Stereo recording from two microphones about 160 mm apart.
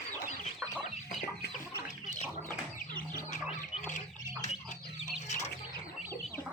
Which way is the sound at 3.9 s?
50° left (ahead or behind).